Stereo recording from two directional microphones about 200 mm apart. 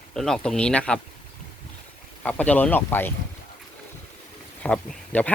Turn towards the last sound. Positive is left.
turn(degrees=5)  # may be behind; listen again after turning